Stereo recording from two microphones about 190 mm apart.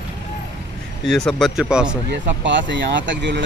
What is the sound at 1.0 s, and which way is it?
Speech, centre (ahead or behind).